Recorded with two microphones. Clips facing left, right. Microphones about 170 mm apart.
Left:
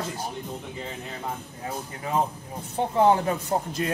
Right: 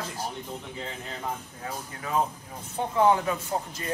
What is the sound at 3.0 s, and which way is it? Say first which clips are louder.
Speech: left 2 dB; 35° left (ahead or behind).